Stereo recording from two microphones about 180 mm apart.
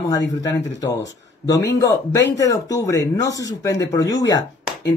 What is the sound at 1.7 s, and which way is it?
Speech, 75° left (ahead or behind).